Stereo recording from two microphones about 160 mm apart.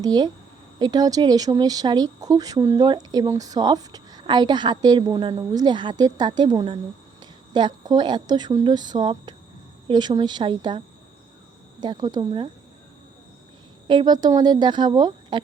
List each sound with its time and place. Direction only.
0.0 s speech: 25° right (ahead or behind)
13.8 s speech: 30° right (ahead or behind)